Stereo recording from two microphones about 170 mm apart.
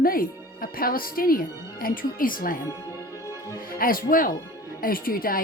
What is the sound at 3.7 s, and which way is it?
A woman's voice, 55° left (ahead or behind).